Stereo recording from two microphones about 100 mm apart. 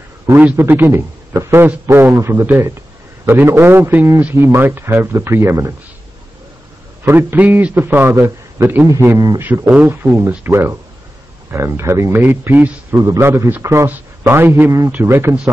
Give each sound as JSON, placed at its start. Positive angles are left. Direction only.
{"t": 0.6, "sound": "a man's voice", "side_deg": -20}
{"t": 7.1, "sound": "a man's voice", "side_deg": -20}
{"t": 10.1, "sound": "a man's voice", "side_deg": -25}
{"t": 12.9, "sound": "a man's voice", "side_deg": -35}